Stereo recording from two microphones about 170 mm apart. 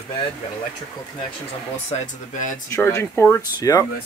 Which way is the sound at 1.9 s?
45° left (ahead or behind).